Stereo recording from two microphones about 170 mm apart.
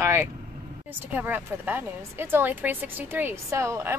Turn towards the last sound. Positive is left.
turn(degrees=-15)  # may be behind; listen again after turning